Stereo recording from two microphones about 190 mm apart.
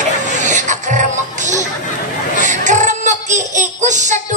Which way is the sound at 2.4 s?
40° right (ahead or behind).